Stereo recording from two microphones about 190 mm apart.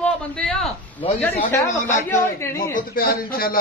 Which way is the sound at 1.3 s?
35° left (ahead or behind).